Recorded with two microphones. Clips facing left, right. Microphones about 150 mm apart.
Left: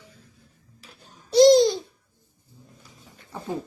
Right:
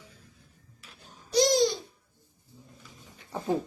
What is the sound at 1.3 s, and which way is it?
Babbling, 25° left (ahead or behind).